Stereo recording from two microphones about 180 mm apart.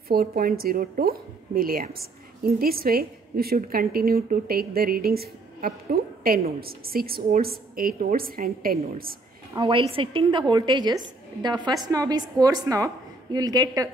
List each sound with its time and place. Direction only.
0.1 s a woman's voice: 55° right (ahead or behind)
9.5 s a woman's voice: 25° right (ahead or behind)